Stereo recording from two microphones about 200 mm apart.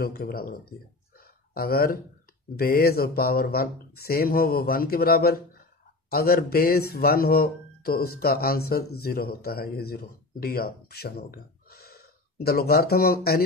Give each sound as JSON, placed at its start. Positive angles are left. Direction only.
{"t": 0.0, "sound": "speech", "side_deg": 50}